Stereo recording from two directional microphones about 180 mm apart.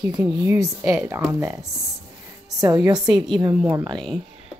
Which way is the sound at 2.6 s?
20° right (ahead or behind).